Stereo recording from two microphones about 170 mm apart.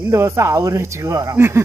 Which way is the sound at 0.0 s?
15° right (ahead or behind).